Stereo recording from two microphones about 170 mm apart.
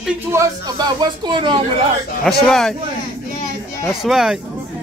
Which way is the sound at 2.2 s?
5° left (ahead or behind).